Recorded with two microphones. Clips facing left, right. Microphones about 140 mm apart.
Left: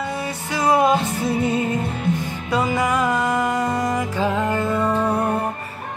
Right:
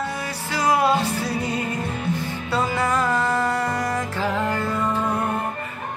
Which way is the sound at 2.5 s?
15° left (ahead or behind).